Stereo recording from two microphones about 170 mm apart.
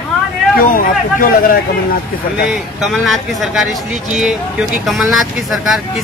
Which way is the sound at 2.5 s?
Centre (ahead or behind).